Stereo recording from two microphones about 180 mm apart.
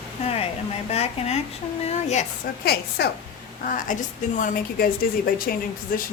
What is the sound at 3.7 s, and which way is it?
A woman's voice, 50° left (ahead or behind).